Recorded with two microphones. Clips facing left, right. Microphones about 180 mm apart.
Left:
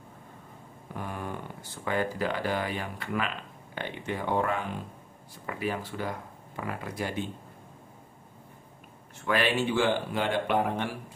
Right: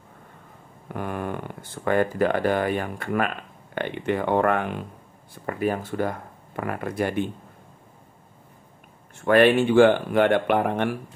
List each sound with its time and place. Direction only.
0.9 s speech: 65° right (ahead or behind)
5.5 s speech: 50° right (ahead or behind)
9.2 s speech: 50° right (ahead or behind)